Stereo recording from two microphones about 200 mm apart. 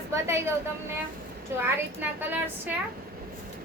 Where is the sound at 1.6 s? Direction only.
10° right (ahead or behind).